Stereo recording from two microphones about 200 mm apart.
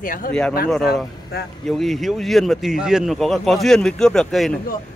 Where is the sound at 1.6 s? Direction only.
Centre (ahead or behind).